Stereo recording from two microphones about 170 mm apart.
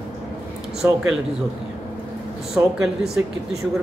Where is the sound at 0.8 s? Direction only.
15° right (ahead or behind).